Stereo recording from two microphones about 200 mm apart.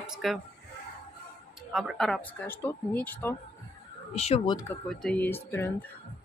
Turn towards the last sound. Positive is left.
turn(degrees=10)  # may be behind; listen again after turning